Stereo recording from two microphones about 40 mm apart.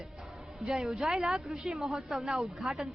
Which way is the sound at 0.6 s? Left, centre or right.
Centre.